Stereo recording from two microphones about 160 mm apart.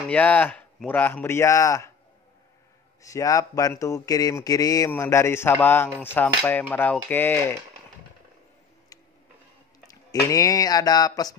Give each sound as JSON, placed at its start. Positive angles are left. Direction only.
{"t": 0.1, "sound": "speech", "side_deg": 10}
{"t": 3.0, "sound": "speech", "side_deg": 20}
{"t": 9.8, "sound": "speech", "side_deg": 20}